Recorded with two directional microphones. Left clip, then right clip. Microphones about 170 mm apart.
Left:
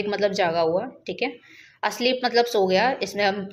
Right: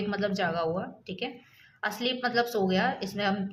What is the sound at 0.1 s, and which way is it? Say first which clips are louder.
A woman's voice: left 8 dB; 15° left (ahead or behind).